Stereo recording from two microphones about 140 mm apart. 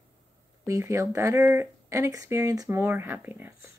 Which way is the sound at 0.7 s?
20° right (ahead or behind).